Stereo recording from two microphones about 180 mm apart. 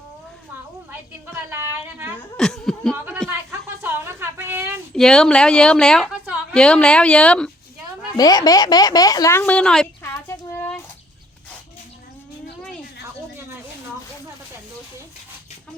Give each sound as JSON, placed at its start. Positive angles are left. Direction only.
{"t": 1.5, "sound": "speech", "side_deg": -10}
{"t": 2.4, "sound": "speech", "side_deg": 5}
{"t": 3.2, "sound": "a sound", "side_deg": -15}
{"t": 4.9, "sound": "speech", "side_deg": 5}
{"t": 8.1, "sound": "speech", "side_deg": 20}
{"t": 10.0, "sound": "a sound", "side_deg": 15}